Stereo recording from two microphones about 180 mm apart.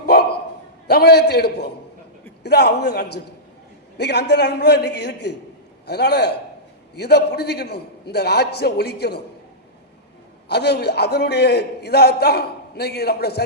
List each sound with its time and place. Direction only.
0.0 s bow-wow: 60° left (ahead or behind)
0.9 s a man's voice: 60° left (ahead or behind)
10.5 s a man's voice: 65° left (ahead or behind)